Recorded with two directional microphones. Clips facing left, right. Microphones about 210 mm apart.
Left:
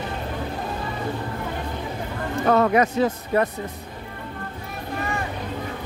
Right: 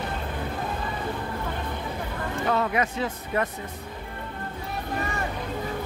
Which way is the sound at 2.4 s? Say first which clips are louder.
Left 7 dB; 65° left (ahead or behind).